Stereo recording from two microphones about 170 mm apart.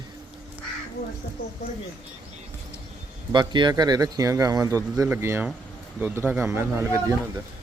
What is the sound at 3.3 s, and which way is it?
A man's voice, 25° right (ahead or behind).